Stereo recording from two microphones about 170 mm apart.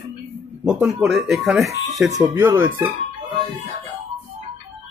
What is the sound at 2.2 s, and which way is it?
Speech, 20° right (ahead or behind).